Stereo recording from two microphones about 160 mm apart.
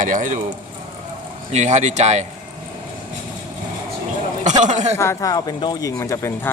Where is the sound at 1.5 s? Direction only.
45° right (ahead or behind).